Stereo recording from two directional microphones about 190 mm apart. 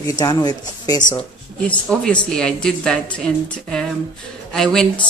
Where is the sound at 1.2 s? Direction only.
5° left (ahead or behind).